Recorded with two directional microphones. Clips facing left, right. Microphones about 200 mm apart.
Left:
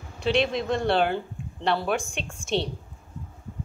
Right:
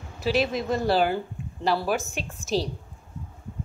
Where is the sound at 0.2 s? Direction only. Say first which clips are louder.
Even; 5° right (ahead or behind).